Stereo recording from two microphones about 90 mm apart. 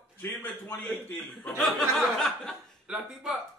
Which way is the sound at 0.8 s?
10° left (ahead or behind).